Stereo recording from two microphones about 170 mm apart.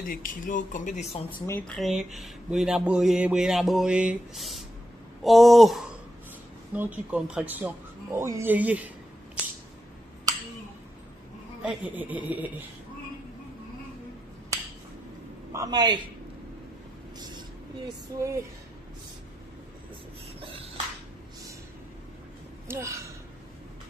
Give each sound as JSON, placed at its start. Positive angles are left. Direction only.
{"t": 0.0, "sound": "speech", "side_deg": 55}
{"t": 1.4, "sound": "speech", "side_deg": 15}
{"t": 1.8, "sound": "speech", "side_deg": 0}
{"t": 11.6, "sound": "speech", "side_deg": -10}
{"t": 15.5, "sound": "a man's voice", "side_deg": -20}
{"t": 18.2, "sound": "speech", "side_deg": -15}
{"t": 20.3, "sound": "a sound", "side_deg": -35}
{"t": 22.7, "sound": "speech", "side_deg": -15}